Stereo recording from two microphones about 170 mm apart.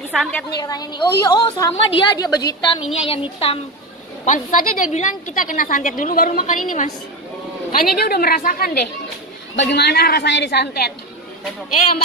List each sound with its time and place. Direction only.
0.1 s a woman's voice: 5° left (ahead or behind)
0.6 s a woman's voice: 25° left (ahead or behind)
3.1 s speech: 35° left (ahead or behind)
4.2 s a woman's voice: 50° left (ahead or behind)
9.6 s a woman's voice: 75° left (ahead or behind)